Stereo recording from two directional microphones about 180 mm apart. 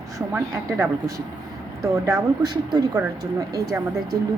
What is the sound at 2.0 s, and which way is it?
Speech, 20° right (ahead or behind).